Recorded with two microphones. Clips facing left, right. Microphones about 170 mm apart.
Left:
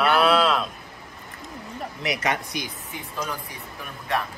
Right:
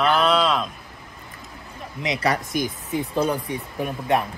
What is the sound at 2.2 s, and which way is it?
Speech, 40° right (ahead or behind).